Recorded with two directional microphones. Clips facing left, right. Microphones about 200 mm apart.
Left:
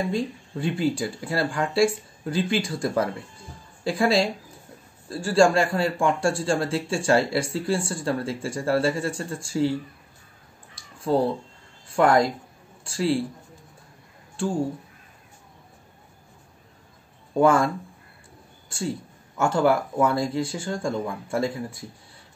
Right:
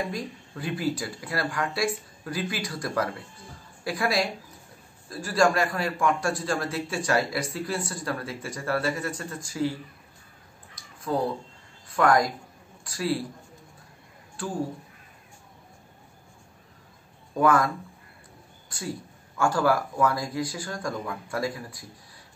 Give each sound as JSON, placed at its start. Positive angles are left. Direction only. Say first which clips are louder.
{"t": 0.1, "sound": "a man's voice", "louder": "left 7 dB", "side_deg": 25}
{"t": 10.7, "sound": "a sound", "louder": "left 5 dB", "side_deg": 30}
{"t": 11.9, "sound": "a man's voice", "louder": "left 3 dB", "side_deg": 25}
{"t": 14.3, "sound": "a sound", "louder": "left 6 dB", "side_deg": 30}
{"t": 17.3, "sound": "speech", "louder": "left 3 dB", "side_deg": 25}
{"t": 18.7, "sound": "a man's voice", "louder": "left 5 dB", "side_deg": 25}